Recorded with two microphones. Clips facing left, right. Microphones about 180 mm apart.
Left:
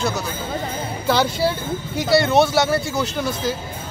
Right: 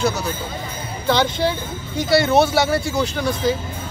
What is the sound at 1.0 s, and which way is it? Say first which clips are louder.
Speech: right 1 dB; 5° left (ahead or behind).